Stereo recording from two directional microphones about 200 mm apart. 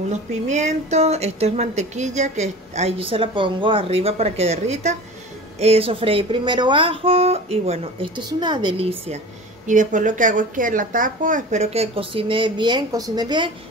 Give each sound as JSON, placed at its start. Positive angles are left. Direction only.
{"t": 0.1, "sound": "a woman's voice", "side_deg": -35}
{"t": 9.7, "sound": "a woman's voice", "side_deg": -40}